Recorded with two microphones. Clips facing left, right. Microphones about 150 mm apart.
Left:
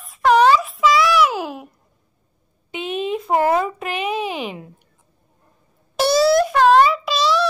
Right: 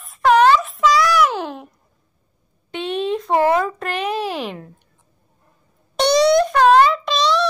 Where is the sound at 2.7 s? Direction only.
5° left (ahead or behind).